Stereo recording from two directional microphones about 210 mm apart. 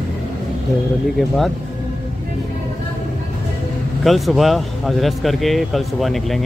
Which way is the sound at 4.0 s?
Centre (ahead or behind).